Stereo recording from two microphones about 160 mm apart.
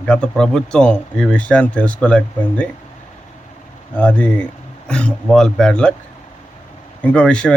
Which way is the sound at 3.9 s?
10° left (ahead or behind).